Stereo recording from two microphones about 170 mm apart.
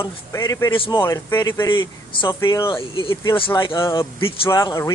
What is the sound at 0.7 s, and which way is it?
Speech, 30° left (ahead or behind).